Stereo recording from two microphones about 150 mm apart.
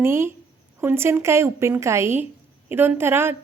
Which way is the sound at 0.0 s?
15° right (ahead or behind).